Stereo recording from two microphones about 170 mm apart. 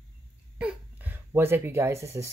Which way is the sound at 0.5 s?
10° right (ahead or behind).